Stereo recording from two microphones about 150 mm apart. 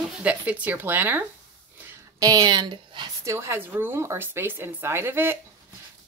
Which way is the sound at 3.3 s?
15° right (ahead or behind).